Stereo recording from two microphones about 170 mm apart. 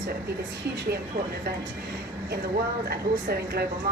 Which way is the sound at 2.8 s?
65° right (ahead or behind).